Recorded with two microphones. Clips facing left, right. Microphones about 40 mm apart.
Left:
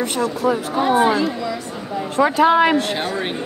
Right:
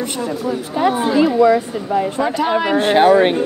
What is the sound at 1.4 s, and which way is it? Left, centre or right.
Speech, right.